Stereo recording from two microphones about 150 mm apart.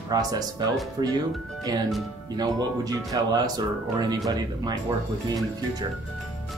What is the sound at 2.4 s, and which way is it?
Speech, 25° right (ahead or behind).